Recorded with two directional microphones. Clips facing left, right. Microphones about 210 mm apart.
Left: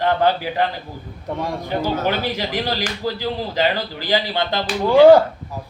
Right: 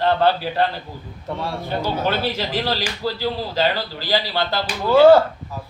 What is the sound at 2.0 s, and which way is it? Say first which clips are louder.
A man's voice: even; 15° left (ahead or behind).